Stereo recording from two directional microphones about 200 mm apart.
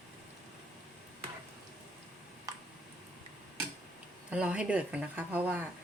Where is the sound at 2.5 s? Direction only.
15° right (ahead or behind).